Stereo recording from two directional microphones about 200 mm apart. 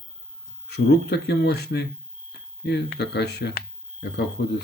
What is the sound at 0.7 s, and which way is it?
Speech, 55° left (ahead or behind).